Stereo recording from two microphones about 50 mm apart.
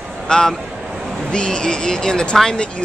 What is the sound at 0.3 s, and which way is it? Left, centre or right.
A man's voice, centre.